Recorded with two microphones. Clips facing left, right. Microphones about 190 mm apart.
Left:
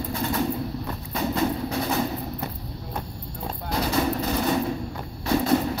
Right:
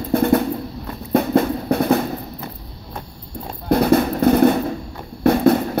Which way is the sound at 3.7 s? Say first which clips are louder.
Right 9 dB; 55° right (ahead or behind).